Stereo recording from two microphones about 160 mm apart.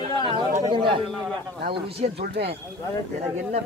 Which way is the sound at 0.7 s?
30° right (ahead or behind).